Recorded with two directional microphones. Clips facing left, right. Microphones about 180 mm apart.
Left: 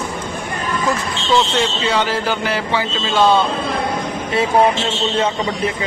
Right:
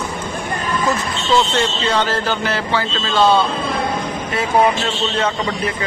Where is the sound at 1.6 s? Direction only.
10° left (ahead or behind).